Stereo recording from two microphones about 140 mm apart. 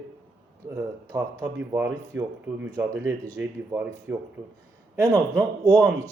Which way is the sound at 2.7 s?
30° right (ahead or behind).